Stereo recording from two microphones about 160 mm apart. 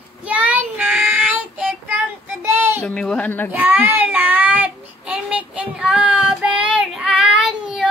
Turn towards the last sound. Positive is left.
turn(degrees=0)  # may be behind; listen again after turning